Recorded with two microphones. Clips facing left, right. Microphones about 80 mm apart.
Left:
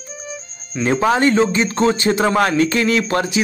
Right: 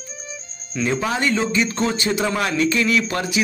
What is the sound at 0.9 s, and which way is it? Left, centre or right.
A man's voice, left.